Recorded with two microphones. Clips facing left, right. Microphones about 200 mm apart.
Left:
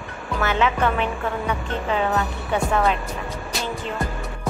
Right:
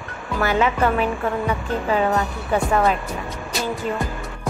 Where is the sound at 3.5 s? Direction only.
Centre (ahead or behind).